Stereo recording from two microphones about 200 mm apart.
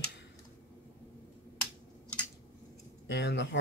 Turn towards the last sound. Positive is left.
turn(degrees=60)  # may be behind; listen again after turning